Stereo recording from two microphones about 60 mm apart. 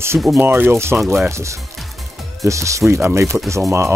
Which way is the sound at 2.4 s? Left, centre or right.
Right.